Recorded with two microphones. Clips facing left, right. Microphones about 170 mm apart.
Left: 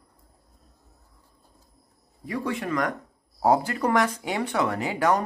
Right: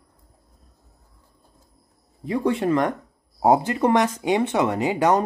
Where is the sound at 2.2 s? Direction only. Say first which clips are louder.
Right 7 dB; 25° right (ahead or behind).